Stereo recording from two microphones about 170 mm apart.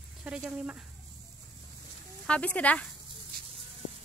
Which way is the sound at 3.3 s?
60° right (ahead or behind).